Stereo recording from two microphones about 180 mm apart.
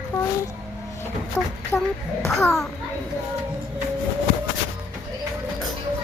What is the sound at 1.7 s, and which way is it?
Speech, 10° left (ahead or behind).